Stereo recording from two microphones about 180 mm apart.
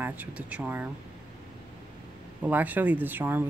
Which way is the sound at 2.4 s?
10° right (ahead or behind).